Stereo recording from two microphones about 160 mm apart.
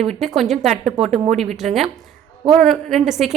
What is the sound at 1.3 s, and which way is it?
Speech, 45° right (ahead or behind).